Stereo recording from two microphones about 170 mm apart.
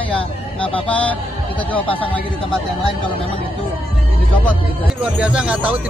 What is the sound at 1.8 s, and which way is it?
Speech, 30° left (ahead or behind).